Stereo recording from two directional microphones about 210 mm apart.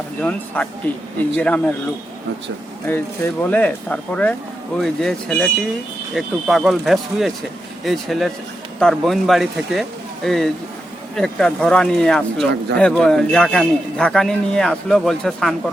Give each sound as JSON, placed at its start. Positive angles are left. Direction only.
{"t": 0.2, "sound": "a man's voice", "side_deg": 5}
{"t": 2.8, "sound": "a man's voice", "side_deg": 10}
{"t": 12.5, "sound": "speech", "side_deg": -50}
{"t": 12.8, "sound": "a man's voice", "side_deg": 5}